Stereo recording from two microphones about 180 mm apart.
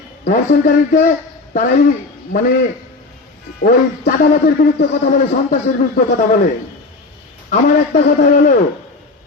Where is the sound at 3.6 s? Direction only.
50° left (ahead or behind).